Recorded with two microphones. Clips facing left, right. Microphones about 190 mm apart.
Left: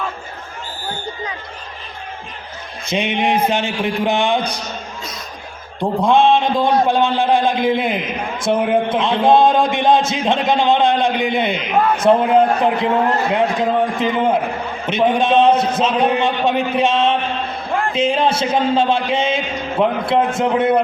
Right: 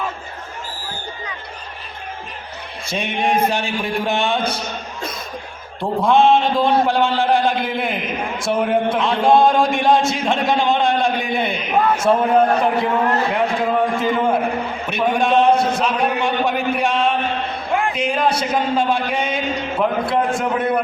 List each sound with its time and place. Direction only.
2.9 s a man's voice: 20° left (ahead or behind)
5.8 s a man's voice: 15° left (ahead or behind)